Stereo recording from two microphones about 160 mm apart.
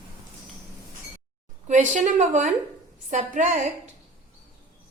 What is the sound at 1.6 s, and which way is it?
A woman's voice, 50° right (ahead or behind).